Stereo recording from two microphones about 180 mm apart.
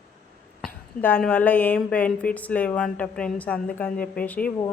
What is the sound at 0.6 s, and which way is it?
A woman's voice, 5° left (ahead or behind).